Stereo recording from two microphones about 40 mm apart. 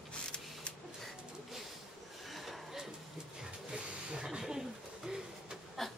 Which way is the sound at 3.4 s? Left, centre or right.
Centre.